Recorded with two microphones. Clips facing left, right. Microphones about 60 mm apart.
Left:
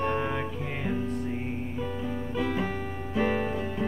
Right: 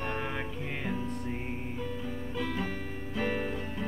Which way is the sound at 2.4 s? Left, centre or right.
Centre.